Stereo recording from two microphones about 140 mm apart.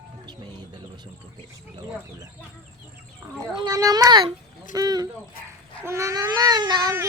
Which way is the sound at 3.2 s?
20° right (ahead or behind).